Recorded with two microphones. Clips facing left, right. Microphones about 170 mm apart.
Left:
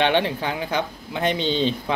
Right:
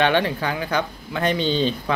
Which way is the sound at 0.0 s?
20° left (ahead or behind).